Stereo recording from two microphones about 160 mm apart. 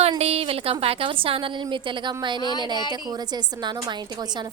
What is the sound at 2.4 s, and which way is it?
Speech, 25° left (ahead or behind).